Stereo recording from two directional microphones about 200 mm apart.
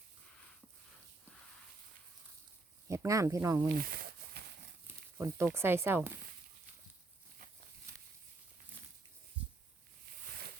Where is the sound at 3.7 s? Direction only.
45° right (ahead or behind).